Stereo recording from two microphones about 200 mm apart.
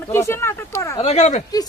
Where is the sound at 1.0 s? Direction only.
35° left (ahead or behind).